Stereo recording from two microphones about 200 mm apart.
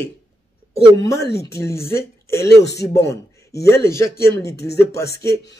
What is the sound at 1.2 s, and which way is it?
Speech, 55° left (ahead or behind).